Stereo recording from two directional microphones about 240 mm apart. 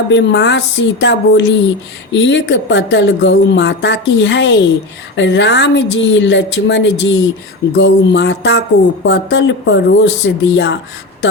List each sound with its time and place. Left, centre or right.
0.1 s speech: left